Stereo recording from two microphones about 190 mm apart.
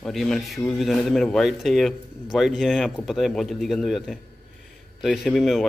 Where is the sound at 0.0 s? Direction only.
Centre (ahead or behind).